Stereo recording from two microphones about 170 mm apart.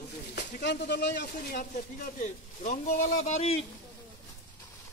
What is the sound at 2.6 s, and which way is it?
Speech, 45° left (ahead or behind).